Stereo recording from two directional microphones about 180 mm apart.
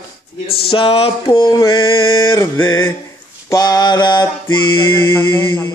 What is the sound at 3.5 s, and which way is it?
Mantra, 20° left (ahead or behind).